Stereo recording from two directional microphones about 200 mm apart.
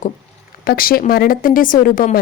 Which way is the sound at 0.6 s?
45° left (ahead or behind).